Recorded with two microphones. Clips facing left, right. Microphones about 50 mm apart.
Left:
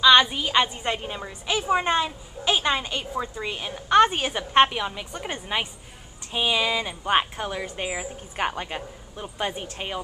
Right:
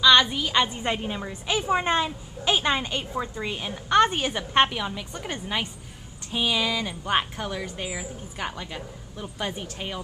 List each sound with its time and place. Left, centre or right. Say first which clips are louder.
0.0 s a woman's voice: left 1 dB; centre
0.8 s a woman's voice: right 1 dB; centre
3.9 s a woman's voice: left 2 dB; centre; by 9.2 s left
9.2 s a woman's voice: left 2 dB; left